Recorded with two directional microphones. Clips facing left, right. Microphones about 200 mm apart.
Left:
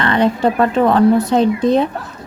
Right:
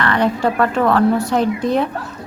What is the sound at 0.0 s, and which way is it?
Speech, 20° left (ahead or behind).